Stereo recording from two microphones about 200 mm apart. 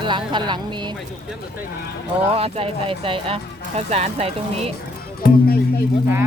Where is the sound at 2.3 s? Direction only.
30° right (ahead or behind).